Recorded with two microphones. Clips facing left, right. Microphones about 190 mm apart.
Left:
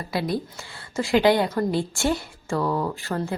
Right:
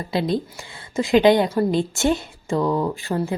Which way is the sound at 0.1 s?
25° right (ahead or behind).